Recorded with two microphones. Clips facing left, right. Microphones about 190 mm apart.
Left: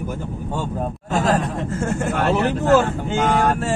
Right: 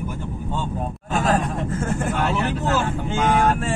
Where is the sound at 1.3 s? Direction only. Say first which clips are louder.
Even; 30° left (ahead or behind).